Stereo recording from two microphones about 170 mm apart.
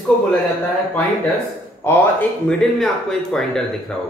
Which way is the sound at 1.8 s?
15° left (ahead or behind).